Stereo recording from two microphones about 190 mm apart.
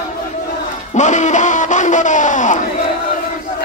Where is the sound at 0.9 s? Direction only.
40° left (ahead or behind).